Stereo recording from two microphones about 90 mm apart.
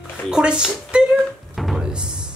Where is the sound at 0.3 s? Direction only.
10° right (ahead or behind).